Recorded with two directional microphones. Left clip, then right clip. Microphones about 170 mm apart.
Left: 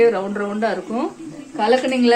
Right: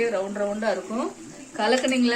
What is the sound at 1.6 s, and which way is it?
Speech, 20° left (ahead or behind).